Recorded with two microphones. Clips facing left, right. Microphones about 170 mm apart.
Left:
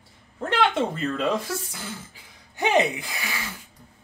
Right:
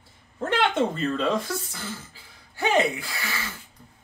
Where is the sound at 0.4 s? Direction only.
Centre (ahead or behind).